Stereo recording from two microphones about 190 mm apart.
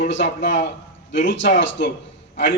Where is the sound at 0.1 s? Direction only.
70° left (ahead or behind).